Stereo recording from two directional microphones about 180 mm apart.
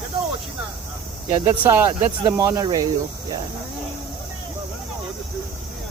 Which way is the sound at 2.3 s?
15° right (ahead or behind).